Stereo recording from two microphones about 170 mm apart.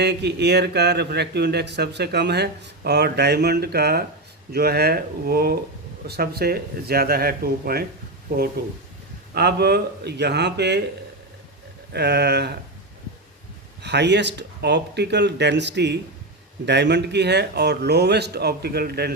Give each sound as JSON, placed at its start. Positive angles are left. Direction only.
{"t": 0.0, "sound": "speech", "side_deg": -80}
{"t": 11.9, "sound": "speech", "side_deg": -75}
{"t": 13.8, "sound": "speech", "side_deg": -85}